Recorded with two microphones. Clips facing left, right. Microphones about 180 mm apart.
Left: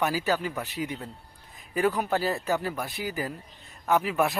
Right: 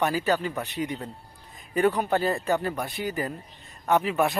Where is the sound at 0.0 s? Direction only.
5° left (ahead or behind).